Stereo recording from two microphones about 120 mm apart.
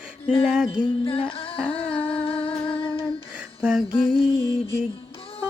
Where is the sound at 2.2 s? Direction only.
50° left (ahead or behind).